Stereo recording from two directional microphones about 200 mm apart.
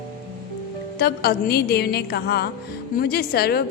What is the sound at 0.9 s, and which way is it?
A woman's voice, 50° left (ahead or behind).